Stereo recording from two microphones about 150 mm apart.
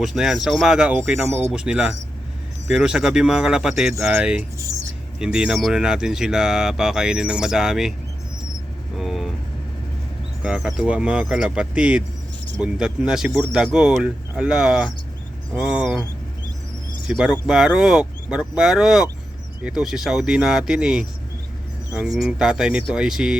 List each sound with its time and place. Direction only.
0.0 s speech: centre (ahead or behind)
4.5 s speech: 20° right (ahead or behind)
5.2 s speech: 5° right (ahead or behind)
9.0 s vehicle: centre (ahead or behind)
10.4 s speech: 5° right (ahead or behind)
17.1 s speech: 5° right (ahead or behind)